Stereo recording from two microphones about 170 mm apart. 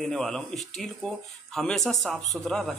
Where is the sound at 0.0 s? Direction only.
Centre (ahead or behind).